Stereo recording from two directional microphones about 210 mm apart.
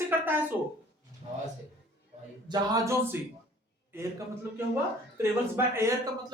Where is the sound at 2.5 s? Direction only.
15° right (ahead or behind).